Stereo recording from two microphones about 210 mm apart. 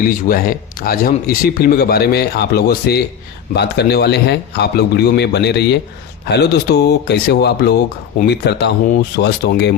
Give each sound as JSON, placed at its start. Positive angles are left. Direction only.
{"t": 0.3, "sound": "speech", "side_deg": 45}